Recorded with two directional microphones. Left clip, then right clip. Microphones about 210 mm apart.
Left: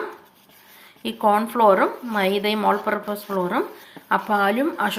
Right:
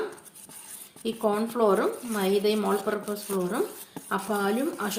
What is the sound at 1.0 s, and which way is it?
Speech, 10° left (ahead or behind).